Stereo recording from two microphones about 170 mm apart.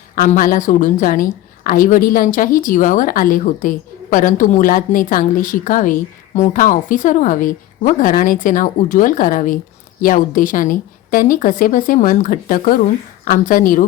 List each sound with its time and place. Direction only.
0.2 s a woman's voice: 50° left (ahead or behind)